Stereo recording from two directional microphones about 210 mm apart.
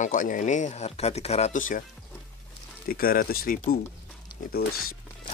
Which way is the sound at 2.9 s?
45° left (ahead or behind).